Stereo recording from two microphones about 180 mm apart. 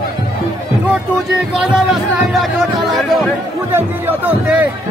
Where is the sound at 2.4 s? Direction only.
Centre (ahead or behind).